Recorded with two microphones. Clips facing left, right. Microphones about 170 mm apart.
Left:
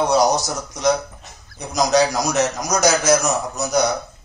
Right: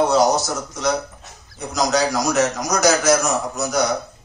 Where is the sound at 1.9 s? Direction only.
20° left (ahead or behind).